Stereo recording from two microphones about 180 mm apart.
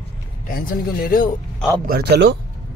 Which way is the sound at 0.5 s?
55° left (ahead or behind).